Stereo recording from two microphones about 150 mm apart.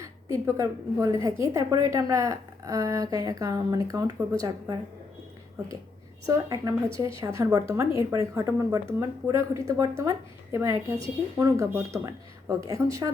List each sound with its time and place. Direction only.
0.0 s a woman's voice: 20° right (ahead or behind)
6.2 s a woman's voice: 25° right (ahead or behind)